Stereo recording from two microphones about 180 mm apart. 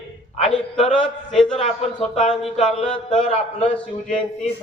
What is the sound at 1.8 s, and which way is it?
Speech, 35° left (ahead or behind).